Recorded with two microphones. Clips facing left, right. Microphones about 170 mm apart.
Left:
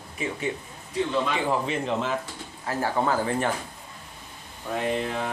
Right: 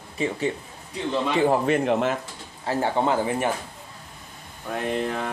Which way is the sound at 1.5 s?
55° right (ahead or behind).